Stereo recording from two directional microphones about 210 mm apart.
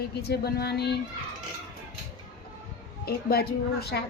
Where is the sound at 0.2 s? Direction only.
50° left (ahead or behind).